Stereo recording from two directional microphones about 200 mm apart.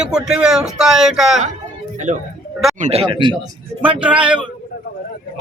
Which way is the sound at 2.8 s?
30° right (ahead or behind).